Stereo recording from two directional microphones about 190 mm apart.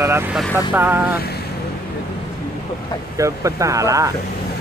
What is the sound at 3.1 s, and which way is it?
Speech, 15° right (ahead or behind).